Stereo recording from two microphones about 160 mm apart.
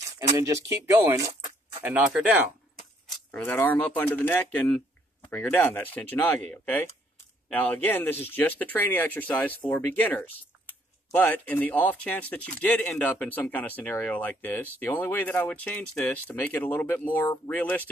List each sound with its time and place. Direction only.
0.4 s speech: 20° right (ahead or behind)
3.1 s speech: 10° left (ahead or behind)